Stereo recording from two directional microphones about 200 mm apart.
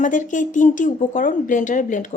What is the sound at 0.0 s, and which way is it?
Speech, 40° left (ahead or behind).